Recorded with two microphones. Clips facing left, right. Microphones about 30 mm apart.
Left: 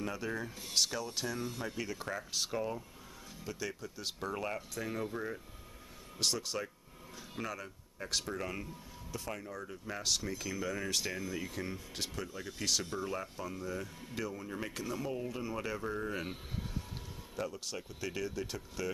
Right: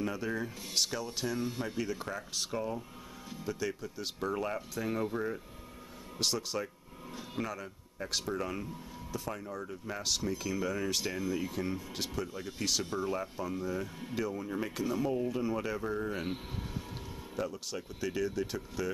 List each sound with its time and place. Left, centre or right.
0.0 s speech: centre
1.8 s speech: centre
17.4 s speech: centre